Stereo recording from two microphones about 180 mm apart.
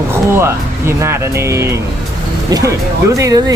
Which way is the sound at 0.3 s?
15° right (ahead or behind).